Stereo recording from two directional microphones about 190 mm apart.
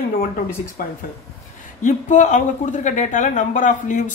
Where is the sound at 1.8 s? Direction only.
40° left (ahead or behind).